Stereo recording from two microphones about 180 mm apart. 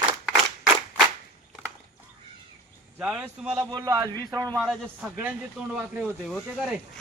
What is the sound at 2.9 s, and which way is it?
Speech, 5° right (ahead or behind).